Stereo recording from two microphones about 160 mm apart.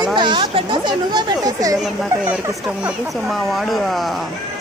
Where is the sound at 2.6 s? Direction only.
Centre (ahead or behind).